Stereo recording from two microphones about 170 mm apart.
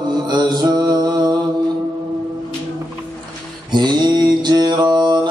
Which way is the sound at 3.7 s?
25° right (ahead or behind).